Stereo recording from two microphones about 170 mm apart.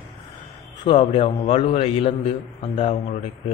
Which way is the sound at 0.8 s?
30° left (ahead or behind).